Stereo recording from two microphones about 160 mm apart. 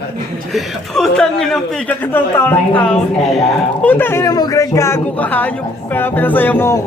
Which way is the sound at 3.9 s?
15° left (ahead or behind).